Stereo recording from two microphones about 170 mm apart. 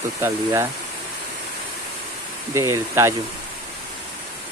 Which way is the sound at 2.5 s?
20° right (ahead or behind).